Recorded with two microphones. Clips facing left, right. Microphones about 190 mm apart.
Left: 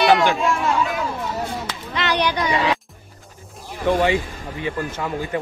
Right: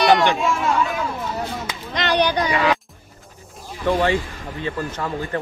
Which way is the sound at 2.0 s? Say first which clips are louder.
Right 2 dB; 35° right (ahead or behind).